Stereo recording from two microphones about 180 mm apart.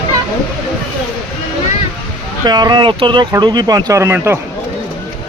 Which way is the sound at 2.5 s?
25° right (ahead or behind).